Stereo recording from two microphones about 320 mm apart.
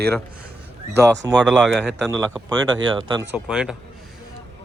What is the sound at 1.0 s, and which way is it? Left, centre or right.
Speech, centre.